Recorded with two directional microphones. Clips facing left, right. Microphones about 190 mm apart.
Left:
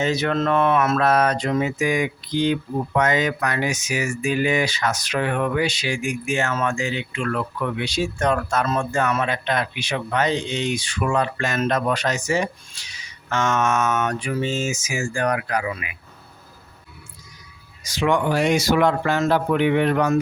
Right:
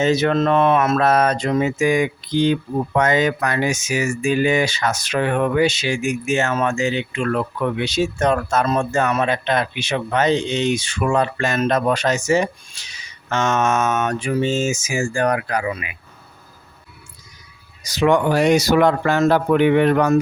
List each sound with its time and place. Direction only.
0.0 s speech: 25° right (ahead or behind)
17.8 s speech: 40° right (ahead or behind)